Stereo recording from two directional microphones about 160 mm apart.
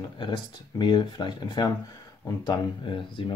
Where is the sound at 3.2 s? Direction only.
35° left (ahead or behind).